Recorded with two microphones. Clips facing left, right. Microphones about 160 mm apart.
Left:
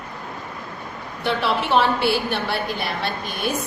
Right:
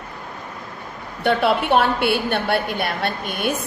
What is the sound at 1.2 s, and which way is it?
A woman's voice, 55° right (ahead or behind).